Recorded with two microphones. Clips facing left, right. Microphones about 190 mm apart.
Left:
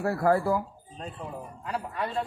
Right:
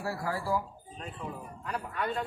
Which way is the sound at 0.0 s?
55° left (ahead or behind).